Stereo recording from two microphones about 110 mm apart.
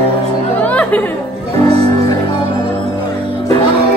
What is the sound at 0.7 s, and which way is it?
Music, 15° left (ahead or behind).